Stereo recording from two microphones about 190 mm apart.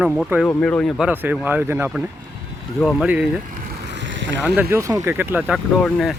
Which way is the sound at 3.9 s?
75° right (ahead or behind).